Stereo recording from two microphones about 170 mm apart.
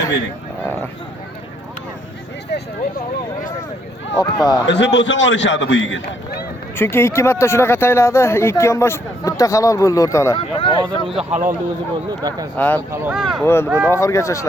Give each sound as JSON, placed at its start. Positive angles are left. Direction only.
{"t": 2.5, "sound": "speech", "side_deg": 80}
{"t": 4.2, "sound": "speech", "side_deg": 25}
{"t": 4.6, "sound": "a man's voice", "side_deg": 90}
{"t": 6.7, "sound": "speech", "side_deg": 15}
{"t": 10.3, "sound": "speech", "side_deg": 30}
{"t": 11.1, "sound": "speech", "side_deg": -5}
{"t": 12.2, "sound": "speech", "side_deg": -25}
{"t": 12.5, "sound": "speech", "side_deg": 10}
{"t": 12.9, "sound": "speech", "side_deg": -10}
{"t": 13.4, "sound": "speech", "side_deg": 15}